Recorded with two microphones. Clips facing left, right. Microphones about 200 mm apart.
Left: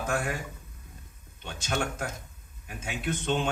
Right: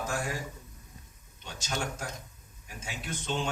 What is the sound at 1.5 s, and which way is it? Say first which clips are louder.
Speech: left 4 dB; 60° left (ahead or behind).